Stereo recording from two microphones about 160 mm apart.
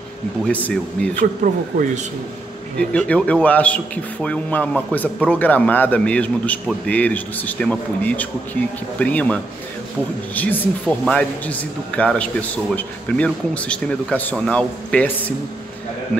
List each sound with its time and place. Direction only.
0.5 s a man's voice: 10° left (ahead or behind)
1.2 s speech: 55° right (ahead or behind)
2.8 s a man's voice: 10° left (ahead or behind)